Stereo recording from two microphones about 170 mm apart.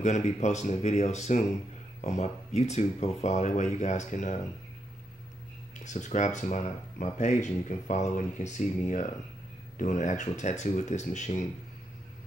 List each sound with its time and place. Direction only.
0.0 s speech: 45° left (ahead or behind)
5.9 s speech: 45° left (ahead or behind)